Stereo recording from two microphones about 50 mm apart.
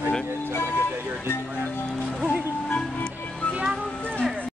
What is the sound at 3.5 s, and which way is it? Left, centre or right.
Music, centre.